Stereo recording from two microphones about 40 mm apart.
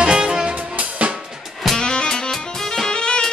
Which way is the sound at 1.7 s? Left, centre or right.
Left.